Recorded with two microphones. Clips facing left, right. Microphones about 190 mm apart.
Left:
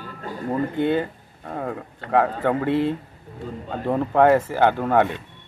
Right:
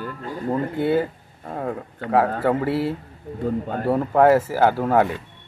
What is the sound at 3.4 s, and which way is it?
Speech, 55° right (ahead or behind).